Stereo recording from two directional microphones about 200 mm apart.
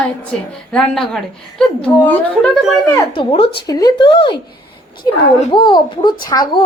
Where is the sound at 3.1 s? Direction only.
25° left (ahead or behind).